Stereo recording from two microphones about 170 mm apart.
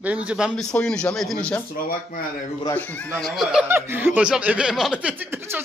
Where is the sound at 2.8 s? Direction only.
10° left (ahead or behind).